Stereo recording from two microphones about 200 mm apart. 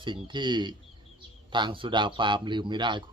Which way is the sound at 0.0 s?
25° right (ahead or behind).